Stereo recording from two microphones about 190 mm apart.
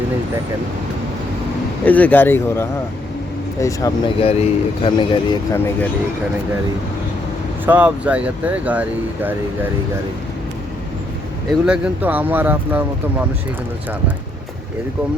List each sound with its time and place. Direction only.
1.8 s speech: 10° left (ahead or behind)
4.2 s speech: 30° left (ahead or behind)
5.5 s speech: 10° left (ahead or behind)
7.6 s speech: 10° right (ahead or behind)
11.6 s speech: 5° right (ahead or behind)